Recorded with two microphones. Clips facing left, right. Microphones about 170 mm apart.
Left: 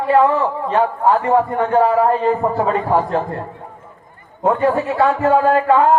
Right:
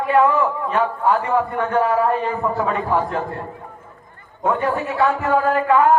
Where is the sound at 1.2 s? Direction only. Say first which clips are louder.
Left 4 dB; 30° left (ahead or behind).